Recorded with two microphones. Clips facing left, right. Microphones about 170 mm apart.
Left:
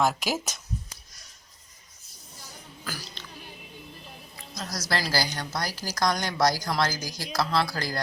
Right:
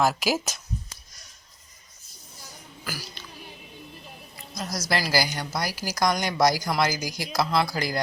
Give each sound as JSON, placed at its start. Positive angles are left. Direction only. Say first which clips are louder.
{"t": 0.0, "sound": "speech", "louder": "right 2 dB", "side_deg": -5}
{"t": 2.8, "sound": "music", "louder": "right 2 dB", "side_deg": -5}
{"t": 4.5, "sound": "a woman's voice", "louder": "right 3 dB", "side_deg": -10}